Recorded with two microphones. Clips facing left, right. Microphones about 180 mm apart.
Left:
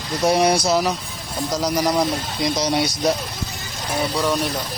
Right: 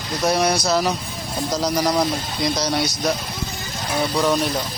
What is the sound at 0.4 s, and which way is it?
Speech, 25° left (ahead or behind).